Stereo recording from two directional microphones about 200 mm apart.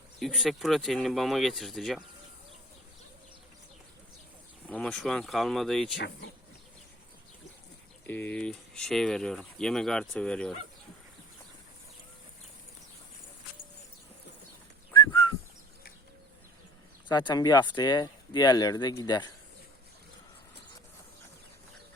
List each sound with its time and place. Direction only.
0.2 s speech: centre (ahead or behind)
4.7 s speech: 5° left (ahead or behind)
8.0 s speech: 10° left (ahead or behind)
14.9 s whistling: 25° left (ahead or behind)
17.1 s speech: 20° left (ahead or behind)